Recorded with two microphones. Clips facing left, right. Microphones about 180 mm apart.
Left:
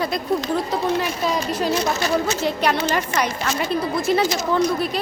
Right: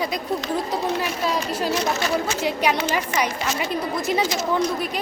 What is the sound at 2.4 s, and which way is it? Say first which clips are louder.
A woman's voice: left 1 dB; 10° right (ahead or behind).